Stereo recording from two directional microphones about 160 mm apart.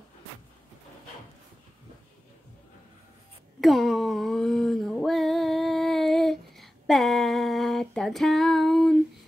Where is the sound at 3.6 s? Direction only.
Centre (ahead or behind).